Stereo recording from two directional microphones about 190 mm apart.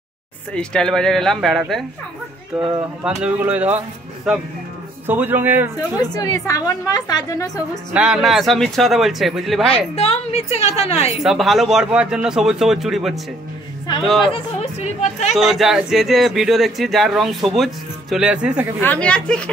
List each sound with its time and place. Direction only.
0.6 s speech: 5° left (ahead or behind)
5.0 s speech: 10° right (ahead or behind)
5.8 s a woman's voice: 20° left (ahead or behind)
7.9 s speech: 5° right (ahead or behind)
9.7 s a woman's voice: 30° left (ahead or behind)
11.2 s speech: centre (ahead or behind)
14.3 s a woman's voice: 35° left (ahead or behind)
15.3 s speech: centre (ahead or behind)
18.8 s speech: 5° left (ahead or behind)